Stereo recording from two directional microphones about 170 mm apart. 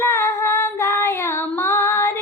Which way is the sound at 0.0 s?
15° left (ahead or behind).